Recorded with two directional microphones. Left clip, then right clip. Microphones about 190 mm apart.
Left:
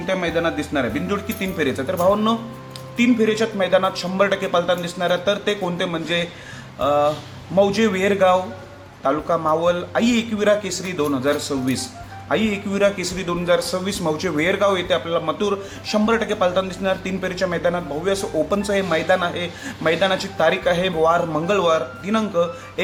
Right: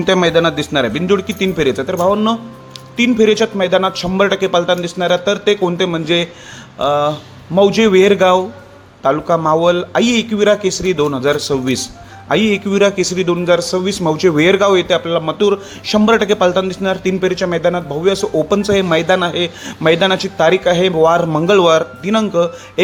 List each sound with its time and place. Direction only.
0.0 s a man's voice: 60° right (ahead or behind); by 22.8 s 40° right (ahead or behind)